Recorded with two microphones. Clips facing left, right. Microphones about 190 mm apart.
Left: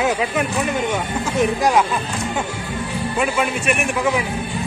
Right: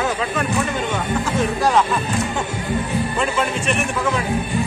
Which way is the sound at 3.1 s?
10° left (ahead or behind).